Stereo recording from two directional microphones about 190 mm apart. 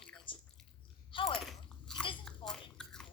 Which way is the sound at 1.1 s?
25° left (ahead or behind).